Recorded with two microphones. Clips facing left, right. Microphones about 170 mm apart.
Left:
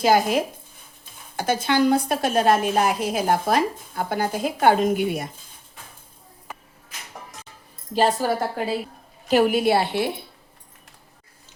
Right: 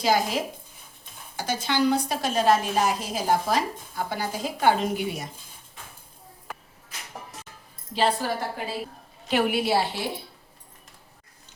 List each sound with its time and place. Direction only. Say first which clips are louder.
0.0 s a woman's voice: left 5 dB; 55° left (ahead or behind)
7.9 s a woman's voice: left 4 dB; 45° left (ahead or behind)